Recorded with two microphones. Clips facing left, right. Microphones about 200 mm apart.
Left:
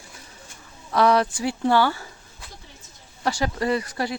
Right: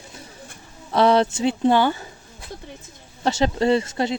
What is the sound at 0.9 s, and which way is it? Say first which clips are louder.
Speech: right 2 dB; 25° right (ahead or behind).